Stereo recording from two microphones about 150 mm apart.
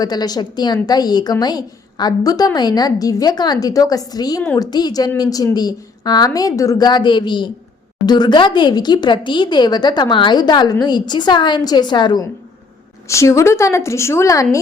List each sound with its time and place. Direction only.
0.0 s a woman's voice: 25° left (ahead or behind)